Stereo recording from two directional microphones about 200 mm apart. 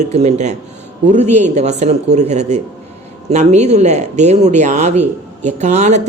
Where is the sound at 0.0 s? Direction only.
35° right (ahead or behind).